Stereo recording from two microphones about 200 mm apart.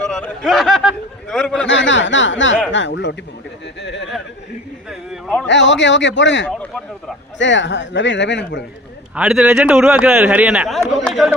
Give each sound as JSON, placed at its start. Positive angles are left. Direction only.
{"t": 0.1, "sound": "speech", "side_deg": 0}
{"t": 1.6, "sound": "speech", "side_deg": 65}
{"t": 4.9, "sound": "speech", "side_deg": 5}
{"t": 5.5, "sound": "speech", "side_deg": 65}
{"t": 9.1, "sound": "speech", "side_deg": -5}